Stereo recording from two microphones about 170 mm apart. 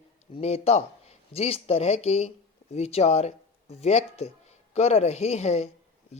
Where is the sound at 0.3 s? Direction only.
35° left (ahead or behind).